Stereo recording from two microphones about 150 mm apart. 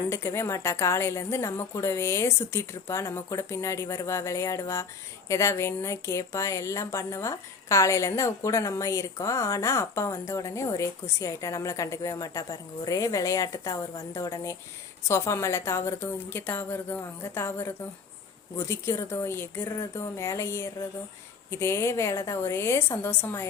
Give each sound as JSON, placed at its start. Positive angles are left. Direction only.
{"t": 0.1, "sound": "a woman's voice", "side_deg": 20}